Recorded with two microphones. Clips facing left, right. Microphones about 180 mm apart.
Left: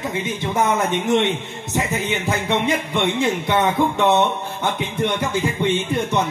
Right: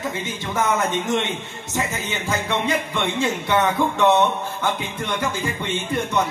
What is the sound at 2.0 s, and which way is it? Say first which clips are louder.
Speech: left 3 dB; 20° left (ahead or behind).